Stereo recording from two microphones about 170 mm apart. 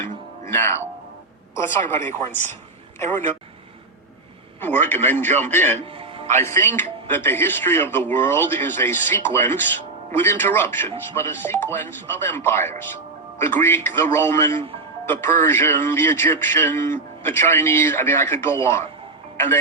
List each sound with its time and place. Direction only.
0.4 s speech: 15° left (ahead or behind)
1.9 s speech: 10° left (ahead or behind)
4.6 s speech: 10° left (ahead or behind)
5.8 s music: 35° right (ahead or behind)
6.3 s speech: 15° left (ahead or behind)